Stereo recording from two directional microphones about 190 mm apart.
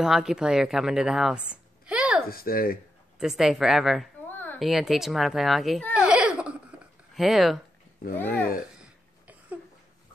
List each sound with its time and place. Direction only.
0.0 s a woman's voice: centre (ahead or behind)
2.2 s speech: 50° left (ahead or behind)
3.2 s a child's voice: centre (ahead or behind)
4.3 s a sound: 10° left (ahead or behind)
4.6 s a child's voice: centre (ahead or behind)
5.9 s a sound: 5° right (ahead or behind)
7.2 s a child's voice: centre (ahead or behind)